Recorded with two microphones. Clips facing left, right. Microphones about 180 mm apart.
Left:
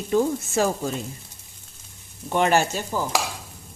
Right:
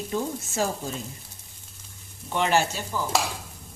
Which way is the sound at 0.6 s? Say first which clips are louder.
Left 5 dB; 80° left.